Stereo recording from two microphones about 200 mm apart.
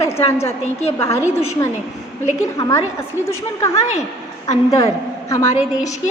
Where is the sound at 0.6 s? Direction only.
30° left (ahead or behind).